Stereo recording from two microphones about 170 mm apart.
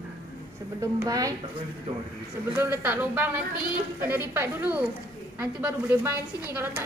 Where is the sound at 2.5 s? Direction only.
10° right (ahead or behind).